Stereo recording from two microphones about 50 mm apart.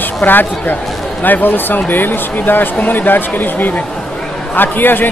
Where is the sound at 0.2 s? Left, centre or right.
Left.